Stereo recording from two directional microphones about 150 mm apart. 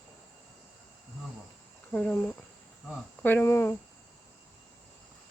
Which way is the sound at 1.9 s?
10° left (ahead or behind).